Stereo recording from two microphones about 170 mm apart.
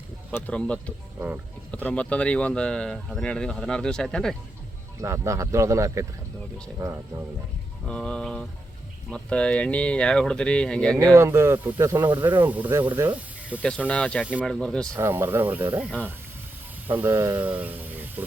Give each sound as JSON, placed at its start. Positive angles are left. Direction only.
{"t": 0.3, "sound": "speech", "side_deg": 10}
{"t": 4.9, "sound": "speech", "side_deg": -15}
{"t": 7.9, "sound": "speech", "side_deg": 5}
{"t": 10.9, "sound": "speech", "side_deg": -15}
{"t": 13.6, "sound": "speech", "side_deg": 5}
{"t": 14.9, "sound": "speech", "side_deg": -10}